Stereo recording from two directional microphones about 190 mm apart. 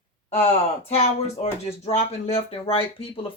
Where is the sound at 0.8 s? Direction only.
35° left (ahead or behind).